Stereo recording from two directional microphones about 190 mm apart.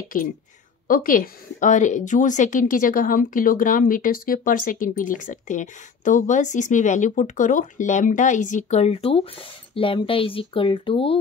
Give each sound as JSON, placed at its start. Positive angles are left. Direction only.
{"t": 0.8, "sound": "a woman's voice", "side_deg": 45}